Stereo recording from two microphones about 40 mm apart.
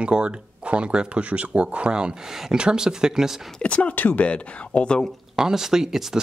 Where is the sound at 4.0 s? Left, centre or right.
Left.